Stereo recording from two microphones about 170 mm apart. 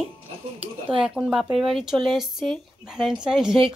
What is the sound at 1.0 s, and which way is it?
Speech, 5° right (ahead or behind).